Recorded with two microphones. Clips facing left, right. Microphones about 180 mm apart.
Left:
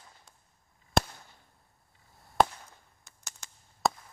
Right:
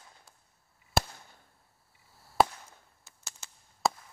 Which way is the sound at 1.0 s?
5° right (ahead or behind).